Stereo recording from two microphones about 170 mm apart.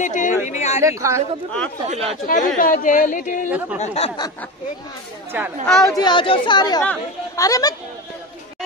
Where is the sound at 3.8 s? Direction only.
35° left (ahead or behind).